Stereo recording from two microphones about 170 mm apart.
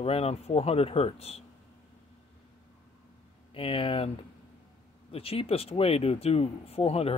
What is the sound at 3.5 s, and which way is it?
Speech, 30° left (ahead or behind).